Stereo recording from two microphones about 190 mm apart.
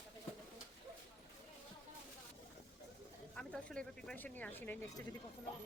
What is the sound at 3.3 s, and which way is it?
Speech, 5° left (ahead or behind).